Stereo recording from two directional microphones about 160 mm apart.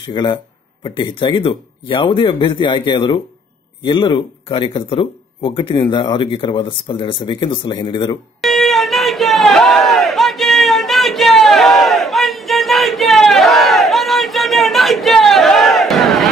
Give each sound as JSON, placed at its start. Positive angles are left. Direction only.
{"t": 0.1, "sound": "speech", "side_deg": 30}
{"t": 8.4, "sound": "crowd", "side_deg": 0}